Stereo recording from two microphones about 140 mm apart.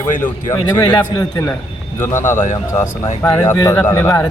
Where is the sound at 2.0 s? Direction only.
20° left (ahead or behind).